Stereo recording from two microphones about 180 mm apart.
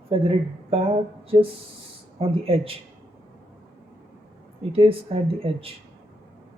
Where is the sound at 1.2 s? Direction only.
30° right (ahead or behind).